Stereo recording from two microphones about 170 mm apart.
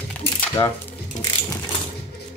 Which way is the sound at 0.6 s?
25° left (ahead or behind).